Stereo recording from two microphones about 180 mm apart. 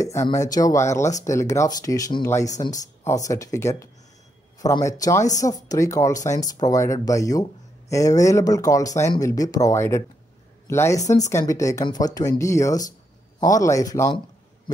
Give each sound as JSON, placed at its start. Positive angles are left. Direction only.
{"t": 0.0, "sound": "speech", "side_deg": 15}